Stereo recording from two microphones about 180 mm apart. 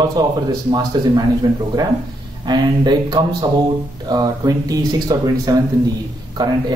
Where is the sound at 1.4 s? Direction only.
20° right (ahead or behind).